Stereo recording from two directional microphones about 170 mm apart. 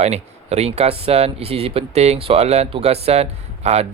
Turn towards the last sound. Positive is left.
turn(degrees=-40)  # may be behind; listen again after turning